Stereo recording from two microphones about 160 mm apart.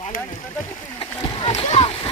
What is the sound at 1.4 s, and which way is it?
Splash, 35° left (ahead or behind).